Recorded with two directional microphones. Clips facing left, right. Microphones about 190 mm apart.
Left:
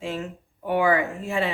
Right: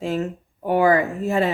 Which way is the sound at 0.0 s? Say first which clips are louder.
Right 6 dB; 40° right (ahead or behind).